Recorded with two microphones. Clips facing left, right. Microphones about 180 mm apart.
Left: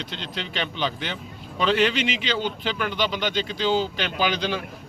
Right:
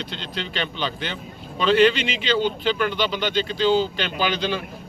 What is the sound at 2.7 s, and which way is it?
A man's voice, 15° left (ahead or behind).